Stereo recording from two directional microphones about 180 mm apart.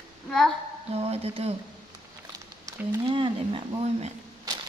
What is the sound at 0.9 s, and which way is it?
Speech, 35° right (ahead or behind).